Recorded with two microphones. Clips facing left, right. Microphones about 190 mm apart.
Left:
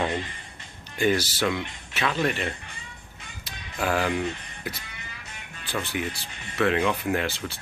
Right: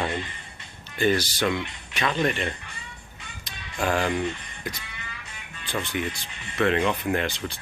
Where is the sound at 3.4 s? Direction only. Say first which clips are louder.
Right 1 dB; 5° left (ahead or behind).